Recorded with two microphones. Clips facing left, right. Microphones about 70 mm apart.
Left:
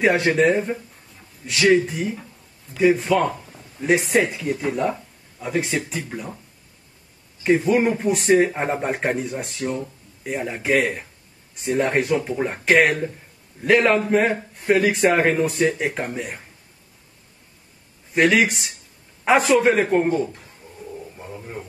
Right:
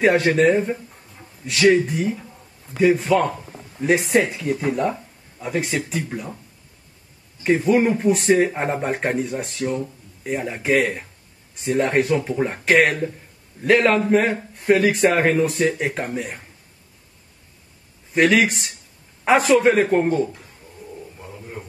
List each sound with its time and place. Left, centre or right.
0.0 s speech: centre
3.3 s a sound: centre
4.1 s speech: centre
7.4 s speech: centre
18.1 s speech: centre